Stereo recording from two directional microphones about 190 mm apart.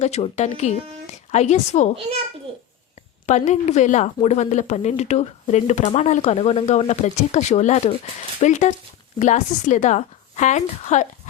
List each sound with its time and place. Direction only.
0.0 s speech: 35° left (ahead or behind)
2.5 s a sound: 30° right (ahead or behind)
3.2 s speech: 40° left (ahead or behind)